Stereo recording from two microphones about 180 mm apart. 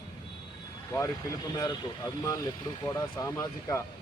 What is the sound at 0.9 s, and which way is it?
Speech, 20° left (ahead or behind).